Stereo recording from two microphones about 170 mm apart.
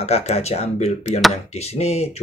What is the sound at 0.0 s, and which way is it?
Speech, 40° left (ahead or behind).